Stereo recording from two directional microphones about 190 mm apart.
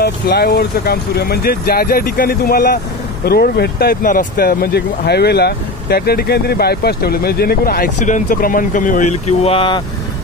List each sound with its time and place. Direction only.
0.0 s speech: 55° left (ahead or behind); by 9.8 s 30° left (ahead or behind)